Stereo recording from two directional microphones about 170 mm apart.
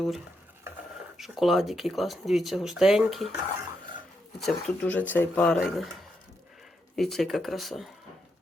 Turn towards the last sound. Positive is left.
turn(degrees=0)  # may be behind; listen again after turning